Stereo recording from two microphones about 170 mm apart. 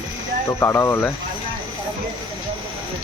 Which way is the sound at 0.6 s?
15° left (ahead or behind).